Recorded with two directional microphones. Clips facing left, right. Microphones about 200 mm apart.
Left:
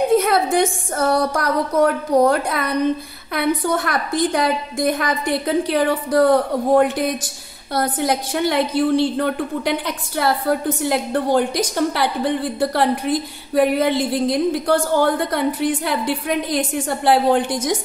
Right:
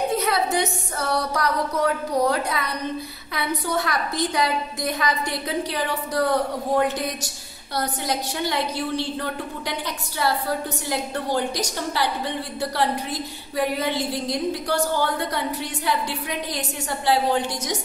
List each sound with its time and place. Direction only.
0.1 s a woman's voice: 50° left (ahead or behind)